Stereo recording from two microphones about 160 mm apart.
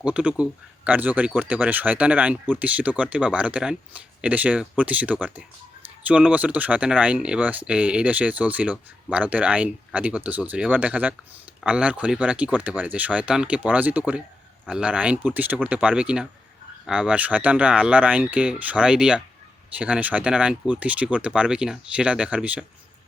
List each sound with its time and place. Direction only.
0.0 s speech: 5° right (ahead or behind)